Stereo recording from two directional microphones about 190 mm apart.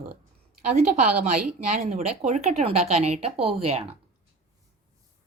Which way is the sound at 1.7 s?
40° right (ahead or behind).